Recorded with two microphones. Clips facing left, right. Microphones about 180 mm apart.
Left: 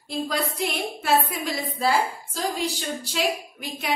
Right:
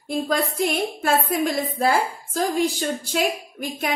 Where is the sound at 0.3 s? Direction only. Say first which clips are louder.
Right 6 dB; 50° right (ahead or behind).